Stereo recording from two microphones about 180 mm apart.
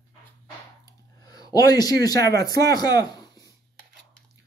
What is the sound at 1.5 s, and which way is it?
Speech, 20° left (ahead or behind).